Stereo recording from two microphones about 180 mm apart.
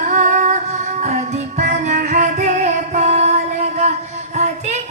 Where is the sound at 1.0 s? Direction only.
40° right (ahead or behind).